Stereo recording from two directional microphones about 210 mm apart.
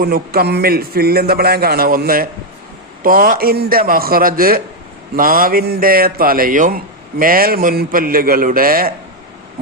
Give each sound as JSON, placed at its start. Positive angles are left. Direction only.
{"t": 0.0, "sound": "speech", "side_deg": -45}